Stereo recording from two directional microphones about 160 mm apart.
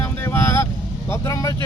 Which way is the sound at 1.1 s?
20° left (ahead or behind).